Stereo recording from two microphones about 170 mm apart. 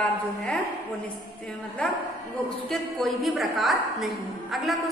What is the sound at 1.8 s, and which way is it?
A woman's voice, 5° left (ahead or behind).